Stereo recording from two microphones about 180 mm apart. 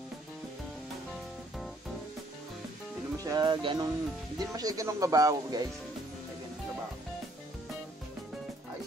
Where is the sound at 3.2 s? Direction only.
20° right (ahead or behind).